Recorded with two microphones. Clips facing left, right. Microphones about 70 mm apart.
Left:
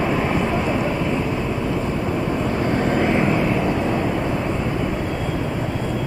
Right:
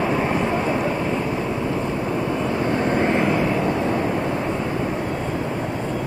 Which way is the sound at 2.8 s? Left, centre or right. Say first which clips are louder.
Left 1 dB; centre.